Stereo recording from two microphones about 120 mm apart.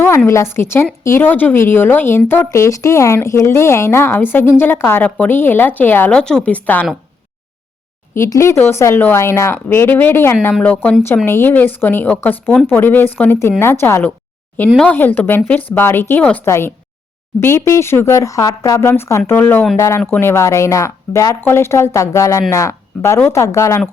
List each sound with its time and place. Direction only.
0.3 s a woman's voice: 20° left (ahead or behind)
8.1 s a woman's voice: 25° left (ahead or behind)